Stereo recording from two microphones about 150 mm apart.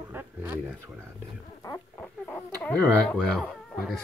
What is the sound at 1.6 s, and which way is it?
Speech, 15° left (ahead or behind).